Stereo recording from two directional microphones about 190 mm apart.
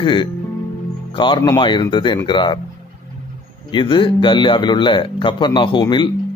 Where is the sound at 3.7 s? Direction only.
25° left (ahead or behind).